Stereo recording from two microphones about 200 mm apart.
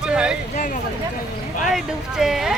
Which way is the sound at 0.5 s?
40° left (ahead or behind).